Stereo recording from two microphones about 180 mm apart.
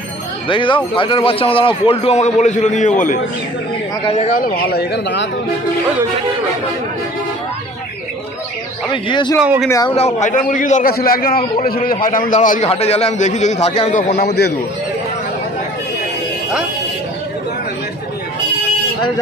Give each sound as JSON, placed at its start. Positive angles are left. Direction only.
{"t": 0.5, "sound": "a man's voice", "side_deg": 30}
{"t": 8.9, "sound": "speech", "side_deg": 25}
{"t": 9.4, "sound": "speech", "side_deg": -5}
{"t": 9.7, "sound": "speech", "side_deg": 20}
{"t": 10.2, "sound": "a man's voice", "side_deg": 45}
{"t": 14.1, "sound": "a man's voice", "side_deg": 65}